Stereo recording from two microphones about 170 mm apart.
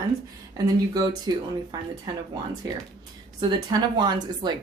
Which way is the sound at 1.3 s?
25° right (ahead or behind).